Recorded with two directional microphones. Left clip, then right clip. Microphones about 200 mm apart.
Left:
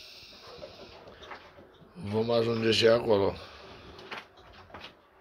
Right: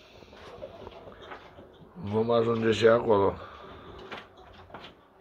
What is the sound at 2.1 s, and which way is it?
A man's voice, 35° left (ahead or behind).